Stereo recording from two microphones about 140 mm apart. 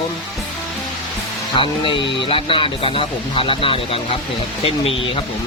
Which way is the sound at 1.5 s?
35° left (ahead or behind).